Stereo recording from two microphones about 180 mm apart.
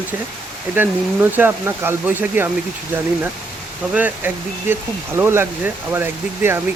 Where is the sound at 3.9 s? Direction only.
10° right (ahead or behind).